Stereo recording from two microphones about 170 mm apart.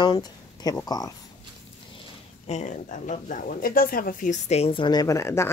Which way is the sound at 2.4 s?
45° left (ahead or behind).